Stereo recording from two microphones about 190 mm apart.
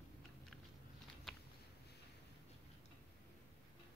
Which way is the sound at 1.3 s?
Centre (ahead or behind).